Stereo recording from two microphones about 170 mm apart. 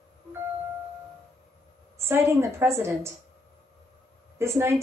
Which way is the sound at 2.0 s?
15° right (ahead or behind).